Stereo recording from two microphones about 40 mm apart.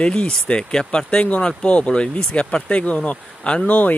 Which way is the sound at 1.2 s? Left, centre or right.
Left.